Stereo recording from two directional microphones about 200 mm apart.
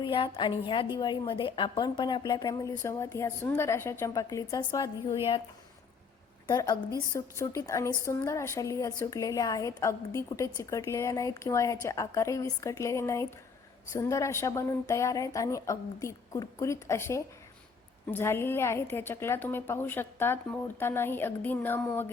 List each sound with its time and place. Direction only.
0.0 s a woman's voice: 25° left (ahead or behind)
6.5 s a woman's voice: 15° left (ahead or behind)